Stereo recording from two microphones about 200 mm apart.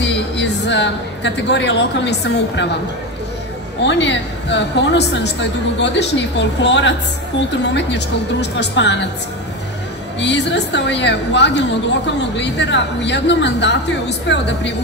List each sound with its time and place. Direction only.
0.0 s a woman's voice: 60° left (ahead or behind)
3.8 s a woman's voice: 65° left (ahead or behind)
10.2 s a woman's voice: 60° left (ahead or behind)